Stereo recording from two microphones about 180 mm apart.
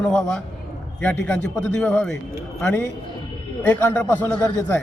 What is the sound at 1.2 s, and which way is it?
A man's voice, 5° left (ahead or behind).